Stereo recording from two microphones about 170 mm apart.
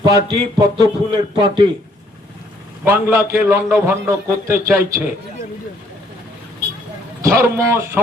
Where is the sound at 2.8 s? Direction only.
15° right (ahead or behind).